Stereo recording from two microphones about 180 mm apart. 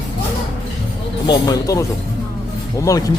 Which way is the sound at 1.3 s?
20° left (ahead or behind).